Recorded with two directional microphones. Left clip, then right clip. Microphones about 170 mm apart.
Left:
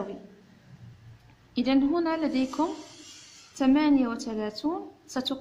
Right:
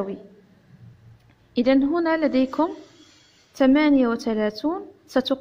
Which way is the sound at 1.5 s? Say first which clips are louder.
Right 5 dB; 20° right (ahead or behind).